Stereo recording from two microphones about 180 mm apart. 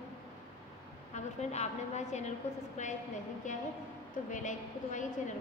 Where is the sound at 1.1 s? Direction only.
40° left (ahead or behind).